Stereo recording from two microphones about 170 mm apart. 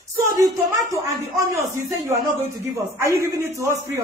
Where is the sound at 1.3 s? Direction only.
20° right (ahead or behind).